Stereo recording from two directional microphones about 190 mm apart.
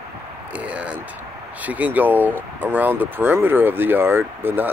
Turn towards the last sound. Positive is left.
turn(degrees=-10)  # may be behind; listen again after turning